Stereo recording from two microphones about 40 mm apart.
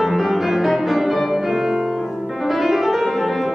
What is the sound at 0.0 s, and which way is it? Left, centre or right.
Music, centre.